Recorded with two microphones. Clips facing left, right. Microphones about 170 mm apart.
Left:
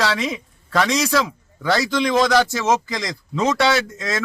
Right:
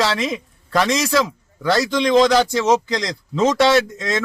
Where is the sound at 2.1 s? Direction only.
15° right (ahead or behind).